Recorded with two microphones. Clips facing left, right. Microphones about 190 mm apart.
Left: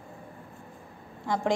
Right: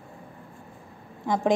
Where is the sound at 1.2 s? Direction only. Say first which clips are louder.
Right 4 dB; 20° right (ahead or behind).